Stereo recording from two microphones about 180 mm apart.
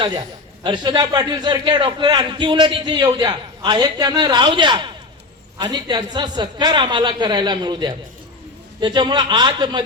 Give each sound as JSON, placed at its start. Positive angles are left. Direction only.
{"t": 0.0, "sound": "a man's voice", "side_deg": -25}